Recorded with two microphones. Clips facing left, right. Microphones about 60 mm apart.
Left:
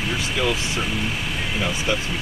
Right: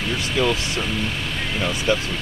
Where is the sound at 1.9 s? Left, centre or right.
Centre.